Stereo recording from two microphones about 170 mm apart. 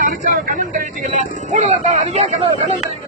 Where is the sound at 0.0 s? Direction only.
50° right (ahead or behind).